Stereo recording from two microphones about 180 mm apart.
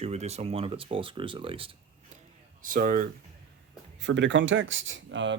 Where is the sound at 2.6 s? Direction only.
50° right (ahead or behind).